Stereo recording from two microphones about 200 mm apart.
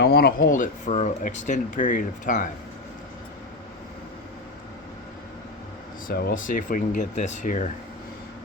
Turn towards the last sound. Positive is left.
turn(degrees=40)  # may be behind; listen again after turning